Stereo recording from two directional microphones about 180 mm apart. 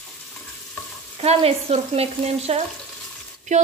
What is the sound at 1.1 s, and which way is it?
A woman's voice, 35° right (ahead or behind).